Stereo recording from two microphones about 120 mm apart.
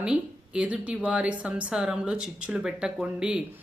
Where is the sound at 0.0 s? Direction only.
10° right (ahead or behind).